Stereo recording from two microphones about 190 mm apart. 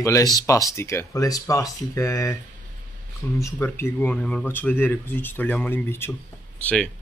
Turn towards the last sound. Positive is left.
turn(degrees=5)  # may be behind; listen again after turning